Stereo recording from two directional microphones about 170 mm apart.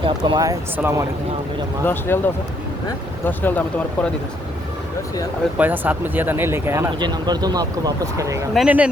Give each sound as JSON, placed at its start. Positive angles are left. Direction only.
{"t": 0.0, "sound": "speech", "side_deg": -25}
{"t": 1.8, "sound": "speech", "side_deg": 10}
{"t": 5.5, "sound": "speech", "side_deg": -10}
{"t": 7.0, "sound": "speech", "side_deg": -25}
{"t": 8.5, "sound": "speech", "side_deg": -5}